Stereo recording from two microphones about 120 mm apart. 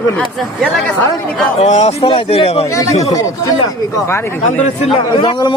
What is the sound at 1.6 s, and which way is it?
Speech, 65° left (ahead or behind).